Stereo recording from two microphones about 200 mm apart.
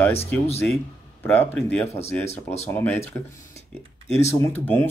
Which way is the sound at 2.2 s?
35° left (ahead or behind).